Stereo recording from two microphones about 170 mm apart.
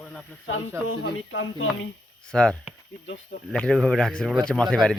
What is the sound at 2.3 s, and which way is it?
Speech, 5° left (ahead or behind).